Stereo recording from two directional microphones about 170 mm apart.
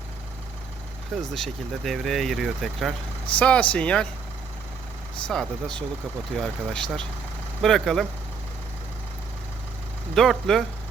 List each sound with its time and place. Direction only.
1.1 s speech: centre (ahead or behind)
5.3 s speech: 5° left (ahead or behind)
10.2 s speech: centre (ahead or behind)